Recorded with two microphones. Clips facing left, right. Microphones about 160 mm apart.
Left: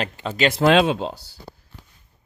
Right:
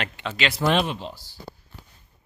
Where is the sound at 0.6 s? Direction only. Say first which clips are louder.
Left 6 dB; 90° left.